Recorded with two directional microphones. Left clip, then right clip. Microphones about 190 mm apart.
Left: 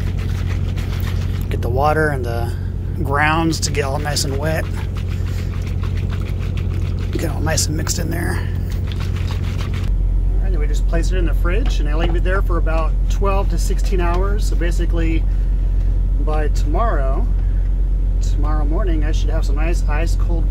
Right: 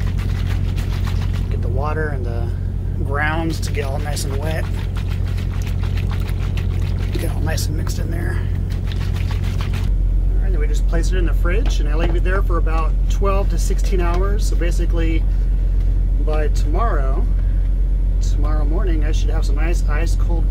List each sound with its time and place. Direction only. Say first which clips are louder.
1.5 s speech: left 9 dB; 55° left (ahead or behind)
3.1 s speech: left 5 dB; 40° left (ahead or behind)
7.2 s speech: left 6 dB; 35° left (ahead or behind)
10.9 s speech: left 2 dB; 20° left (ahead or behind)
16.3 s speech: left 2 dB; 20° left (ahead or behind)
18.5 s speech: left 2 dB; 15° left (ahead or behind)